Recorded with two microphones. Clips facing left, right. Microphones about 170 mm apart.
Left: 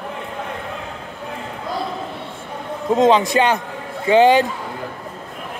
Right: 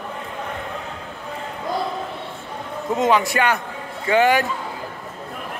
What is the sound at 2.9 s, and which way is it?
A man's voice, 20° left (ahead or behind).